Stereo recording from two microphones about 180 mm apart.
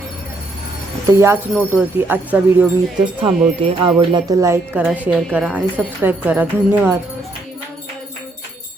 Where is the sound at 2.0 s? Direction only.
10° right (ahead or behind).